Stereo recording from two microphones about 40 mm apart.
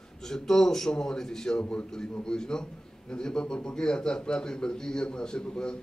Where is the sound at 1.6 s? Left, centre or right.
Left.